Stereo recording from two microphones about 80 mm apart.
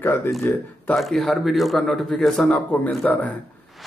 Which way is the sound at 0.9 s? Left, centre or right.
Centre.